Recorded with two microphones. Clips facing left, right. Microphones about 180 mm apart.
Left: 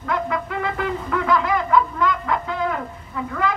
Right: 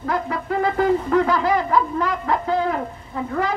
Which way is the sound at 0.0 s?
35° right (ahead or behind).